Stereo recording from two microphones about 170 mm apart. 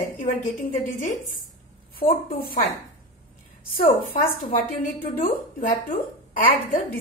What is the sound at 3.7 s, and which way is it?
Speech, 60° left (ahead or behind).